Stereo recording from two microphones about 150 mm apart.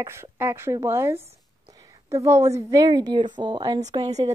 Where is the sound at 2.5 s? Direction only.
25° right (ahead or behind).